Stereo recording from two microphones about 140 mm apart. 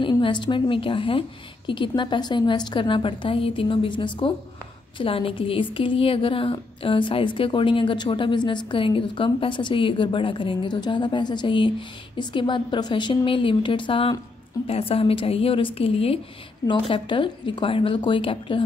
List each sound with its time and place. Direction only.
0.0 s a woman's voice: 35° left (ahead or behind)